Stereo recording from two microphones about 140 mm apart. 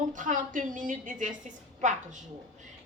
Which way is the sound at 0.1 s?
70° right (ahead or behind).